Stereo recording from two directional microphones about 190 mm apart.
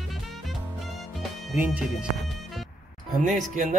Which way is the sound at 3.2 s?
40° right (ahead or behind).